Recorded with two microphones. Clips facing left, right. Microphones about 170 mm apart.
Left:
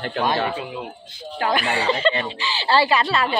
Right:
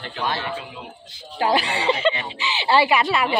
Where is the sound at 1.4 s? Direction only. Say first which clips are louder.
Right 1 dB; 25° right (ahead or behind).